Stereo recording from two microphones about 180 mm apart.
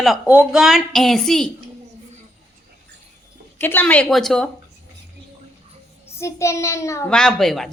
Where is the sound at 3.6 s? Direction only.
10° left (ahead or behind).